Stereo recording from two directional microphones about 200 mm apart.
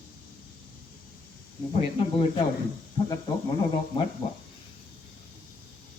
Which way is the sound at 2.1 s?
25° left (ahead or behind).